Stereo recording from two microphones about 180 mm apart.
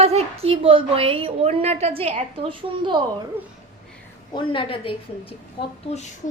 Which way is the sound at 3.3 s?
10° right (ahead or behind).